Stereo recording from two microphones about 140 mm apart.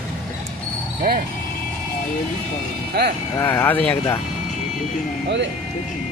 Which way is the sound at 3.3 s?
15° left (ahead or behind).